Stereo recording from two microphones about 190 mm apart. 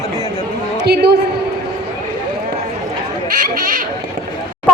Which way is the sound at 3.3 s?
45° right (ahead or behind).